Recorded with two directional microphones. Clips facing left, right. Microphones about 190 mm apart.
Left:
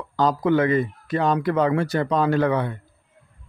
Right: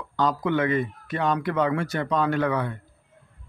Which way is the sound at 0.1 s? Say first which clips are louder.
Left 4 dB; 35° left (ahead or behind).